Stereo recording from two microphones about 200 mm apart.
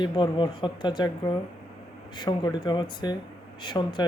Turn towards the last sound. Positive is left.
turn(degrees=20)  # may be behind; listen again after turning